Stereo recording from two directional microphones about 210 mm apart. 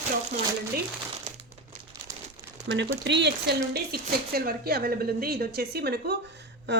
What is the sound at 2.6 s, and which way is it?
Speech, 55° right (ahead or behind).